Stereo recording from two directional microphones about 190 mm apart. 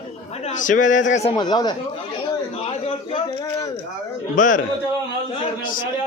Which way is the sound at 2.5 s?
30° left (ahead or behind).